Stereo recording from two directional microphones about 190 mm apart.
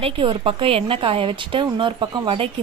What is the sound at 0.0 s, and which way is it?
A woman's voice, 30° right (ahead or behind).